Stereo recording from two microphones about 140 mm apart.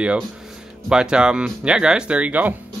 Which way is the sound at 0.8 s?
5° right (ahead or behind).